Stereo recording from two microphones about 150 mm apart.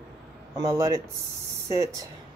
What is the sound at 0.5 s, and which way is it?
Speech, 20° right (ahead or behind).